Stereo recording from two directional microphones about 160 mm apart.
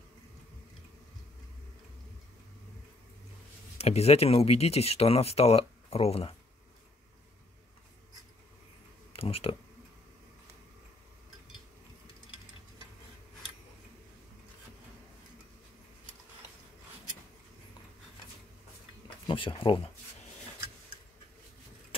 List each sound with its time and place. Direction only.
3.7 s speech: 40° left (ahead or behind)
9.1 s speech: 35° left (ahead or behind)
19.2 s speech: 30° left (ahead or behind)